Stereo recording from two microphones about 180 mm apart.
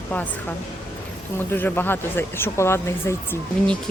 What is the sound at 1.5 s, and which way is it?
Speech, 10° left (ahead or behind).